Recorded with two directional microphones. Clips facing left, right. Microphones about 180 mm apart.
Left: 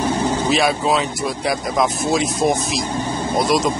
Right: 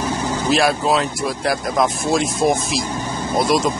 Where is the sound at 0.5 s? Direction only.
Centre (ahead or behind).